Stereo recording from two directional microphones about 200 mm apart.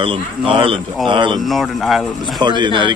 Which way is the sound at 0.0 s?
25° right (ahead or behind).